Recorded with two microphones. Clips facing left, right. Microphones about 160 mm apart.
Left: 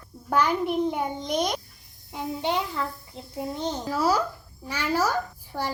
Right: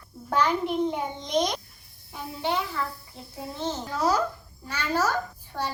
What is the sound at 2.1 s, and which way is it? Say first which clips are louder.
Speech: left 2 dB; 20° left (ahead or behind).